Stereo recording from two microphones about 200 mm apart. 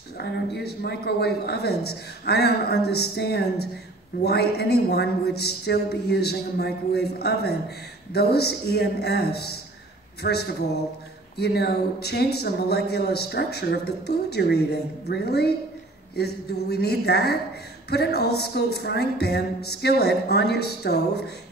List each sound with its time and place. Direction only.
0.2 s speech: 55° left (ahead or behind)